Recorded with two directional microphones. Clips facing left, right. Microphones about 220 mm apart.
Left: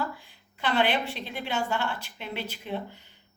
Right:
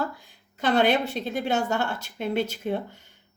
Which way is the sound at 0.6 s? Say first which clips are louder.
Right 5 dB; 45° right (ahead or behind).